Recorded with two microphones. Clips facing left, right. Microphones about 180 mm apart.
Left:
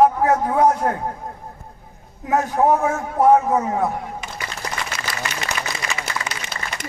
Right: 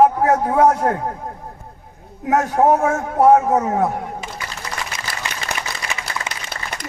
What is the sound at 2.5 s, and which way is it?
A man's voice, 45° right (ahead or behind).